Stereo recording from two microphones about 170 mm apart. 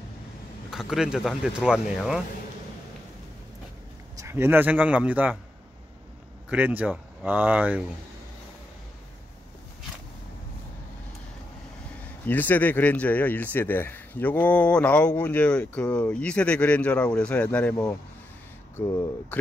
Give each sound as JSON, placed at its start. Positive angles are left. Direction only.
{"t": 0.7, "sound": "speech", "side_deg": 0}
{"t": 4.2, "sound": "speech", "side_deg": -15}
{"t": 6.5, "sound": "speech", "side_deg": -10}
{"t": 12.3, "sound": "speech", "side_deg": 10}
{"t": 18.8, "sound": "speech", "side_deg": 20}